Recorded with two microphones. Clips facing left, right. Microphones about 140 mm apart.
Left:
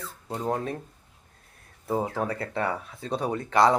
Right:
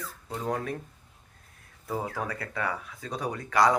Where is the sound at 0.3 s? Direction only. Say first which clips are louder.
Left 3 dB; 25° left (ahead or behind).